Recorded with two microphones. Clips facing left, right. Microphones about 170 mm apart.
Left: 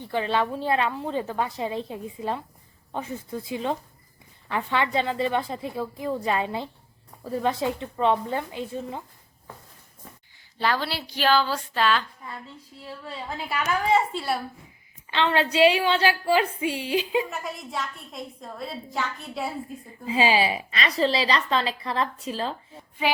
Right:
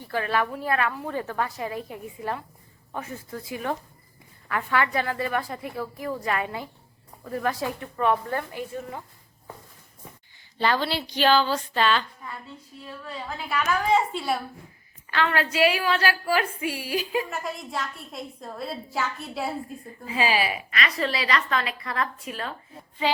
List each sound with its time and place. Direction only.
0.0 s a woman's voice: 20° left (ahead or behind)
10.6 s a woman's voice: 5° left (ahead or behind)
13.1 s a woman's voice: 25° left (ahead or behind)
13.9 s a woman's voice: centre (ahead or behind)
15.1 s a woman's voice: 25° left (ahead or behind)
17.2 s a woman's voice: centre (ahead or behind)
20.1 s a woman's voice: 25° left (ahead or behind)